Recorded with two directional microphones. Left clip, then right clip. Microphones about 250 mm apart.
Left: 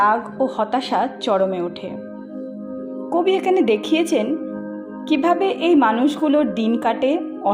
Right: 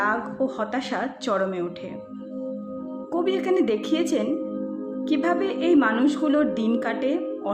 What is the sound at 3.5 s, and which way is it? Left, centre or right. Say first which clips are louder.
Speech: left 5 dB; centre.